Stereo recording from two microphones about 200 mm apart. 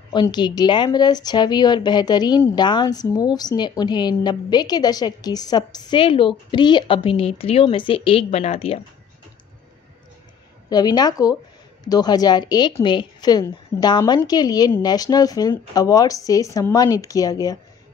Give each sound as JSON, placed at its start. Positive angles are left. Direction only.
{"t": 0.1, "sound": "a woman's voice", "side_deg": 20}
{"t": 10.7, "sound": "a woman's voice", "side_deg": 20}